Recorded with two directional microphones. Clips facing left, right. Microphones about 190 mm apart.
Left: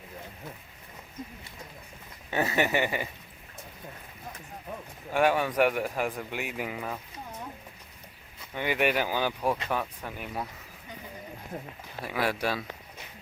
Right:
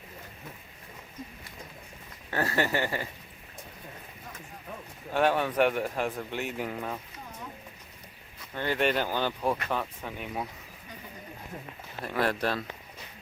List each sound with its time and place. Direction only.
2.3 s speech: 20° left (ahead or behind)
5.1 s speech: 10° left (ahead or behind)
8.5 s speech: 15° left (ahead or behind)
12.0 s speech: 10° left (ahead or behind)